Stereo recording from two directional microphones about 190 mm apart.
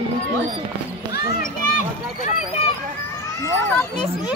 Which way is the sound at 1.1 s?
45° left (ahead or behind).